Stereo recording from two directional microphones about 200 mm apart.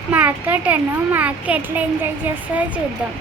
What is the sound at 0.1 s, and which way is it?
A woman's voice, 5° right (ahead or behind).